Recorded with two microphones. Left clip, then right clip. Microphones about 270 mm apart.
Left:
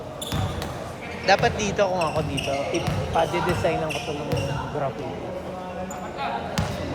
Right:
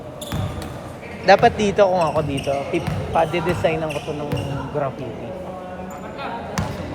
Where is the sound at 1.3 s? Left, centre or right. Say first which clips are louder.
Right 7 dB; right.